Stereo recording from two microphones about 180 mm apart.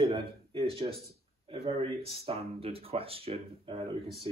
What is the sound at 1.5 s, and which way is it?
Speech, 30° right (ahead or behind).